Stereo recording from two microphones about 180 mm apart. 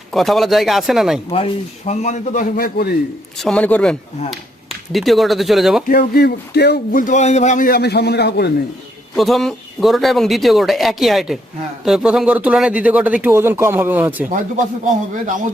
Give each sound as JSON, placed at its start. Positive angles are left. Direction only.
{"t": 0.1, "sound": "speech", "side_deg": 0}
{"t": 1.3, "sound": "a man's voice", "side_deg": 35}
{"t": 3.3, "sound": "speech", "side_deg": 5}
{"t": 5.9, "sound": "a man's voice", "side_deg": 60}
{"t": 7.0, "sound": "a man's voice", "side_deg": 40}
{"t": 9.1, "sound": "speech", "side_deg": 0}